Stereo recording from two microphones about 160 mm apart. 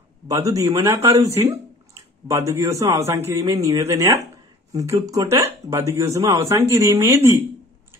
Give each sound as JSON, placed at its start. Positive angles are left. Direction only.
{"t": 0.3, "sound": "speech", "side_deg": -20}